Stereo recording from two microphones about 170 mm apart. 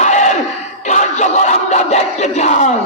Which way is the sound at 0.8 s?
45° left (ahead or behind).